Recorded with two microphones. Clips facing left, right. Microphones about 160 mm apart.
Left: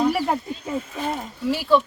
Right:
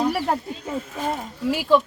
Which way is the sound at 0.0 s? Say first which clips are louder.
Left 1 dB; centre (ahead or behind).